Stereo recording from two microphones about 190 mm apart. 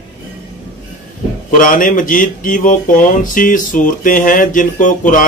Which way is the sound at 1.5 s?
45° left (ahead or behind).